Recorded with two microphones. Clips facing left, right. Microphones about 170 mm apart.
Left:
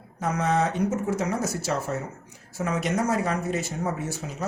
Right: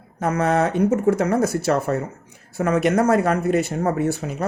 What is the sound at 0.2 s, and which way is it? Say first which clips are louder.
Speech: right 5 dB; 60° right (ahead or behind).